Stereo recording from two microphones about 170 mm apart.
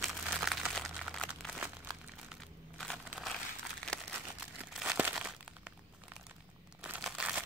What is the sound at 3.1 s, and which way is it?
Crumpling, centre (ahead or behind).